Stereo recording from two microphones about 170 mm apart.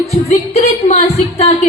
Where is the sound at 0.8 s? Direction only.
40° left (ahead or behind).